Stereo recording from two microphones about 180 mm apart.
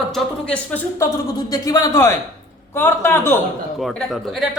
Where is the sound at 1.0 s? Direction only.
20° left (ahead or behind).